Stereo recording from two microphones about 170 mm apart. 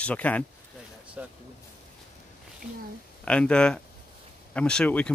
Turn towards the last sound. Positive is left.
turn(degrees=5)  # may be behind; listen again after turning